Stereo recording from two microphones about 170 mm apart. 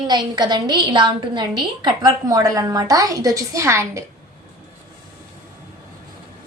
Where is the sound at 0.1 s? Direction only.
25° right (ahead or behind).